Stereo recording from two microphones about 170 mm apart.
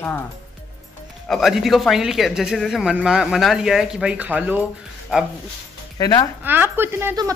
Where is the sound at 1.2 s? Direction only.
Centre (ahead or behind).